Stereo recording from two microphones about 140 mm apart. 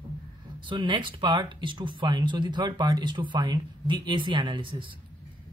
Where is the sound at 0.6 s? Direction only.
35° right (ahead or behind).